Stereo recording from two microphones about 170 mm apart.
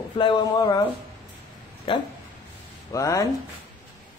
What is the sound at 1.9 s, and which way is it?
Speech, 30° left (ahead or behind).